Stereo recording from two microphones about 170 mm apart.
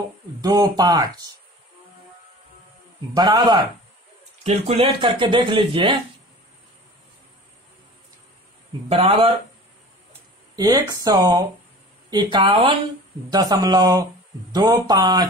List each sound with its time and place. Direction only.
0.4 s speech: 20° right (ahead or behind)
3.2 s speech: 25° right (ahead or behind)
4.4 s speech: 35° right (ahead or behind)
8.8 s speech: 40° right (ahead or behind)
10.5 s speech: 20° right (ahead or behind)